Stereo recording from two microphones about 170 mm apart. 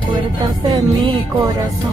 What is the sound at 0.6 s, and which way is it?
Music, 25° right (ahead or behind).